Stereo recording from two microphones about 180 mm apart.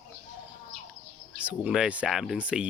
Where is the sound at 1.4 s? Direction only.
5° right (ahead or behind).